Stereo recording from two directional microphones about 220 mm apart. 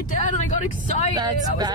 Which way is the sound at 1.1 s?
20° right (ahead or behind).